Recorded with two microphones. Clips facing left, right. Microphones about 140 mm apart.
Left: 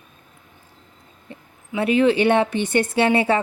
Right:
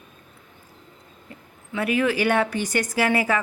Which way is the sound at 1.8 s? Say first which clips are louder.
Left 5 dB; 25° left (ahead or behind).